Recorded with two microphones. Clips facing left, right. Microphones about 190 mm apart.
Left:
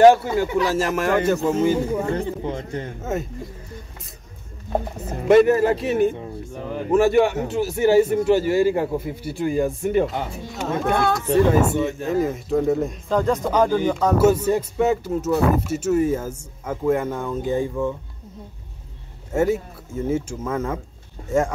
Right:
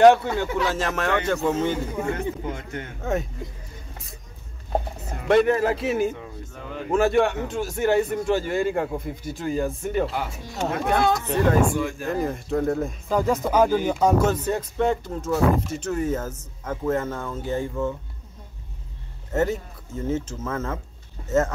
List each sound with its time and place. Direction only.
0.0 s speech: 5° left (ahead or behind)
1.9 s speech: 40° left (ahead or behind)
3.0 s speech: centre (ahead or behind)
5.3 s speech: 5° left (ahead or behind)
6.1 s speech: 30° left (ahead or behind)
6.9 s speech: 5° left (ahead or behind)
11.2 s speech: 20° left (ahead or behind)
12.1 s speech: centre (ahead or behind)
14.1 s speech: 10° left (ahead or behind)
19.3 s speech: 10° left (ahead or behind)